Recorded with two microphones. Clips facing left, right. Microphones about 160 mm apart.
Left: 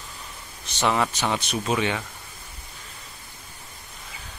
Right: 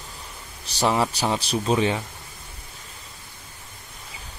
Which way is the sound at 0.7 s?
35° right (ahead or behind).